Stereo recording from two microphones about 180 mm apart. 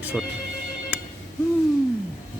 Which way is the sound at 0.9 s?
10° right (ahead or behind).